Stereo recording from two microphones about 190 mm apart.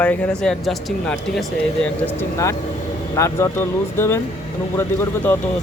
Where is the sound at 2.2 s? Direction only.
15° left (ahead or behind).